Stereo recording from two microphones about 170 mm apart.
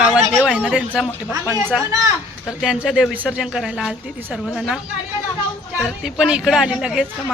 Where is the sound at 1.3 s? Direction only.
20° right (ahead or behind).